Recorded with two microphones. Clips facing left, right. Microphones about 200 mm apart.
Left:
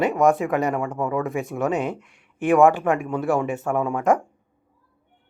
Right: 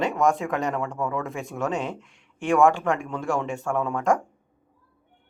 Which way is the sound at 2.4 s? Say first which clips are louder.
Left 3 dB; 15° left (ahead or behind).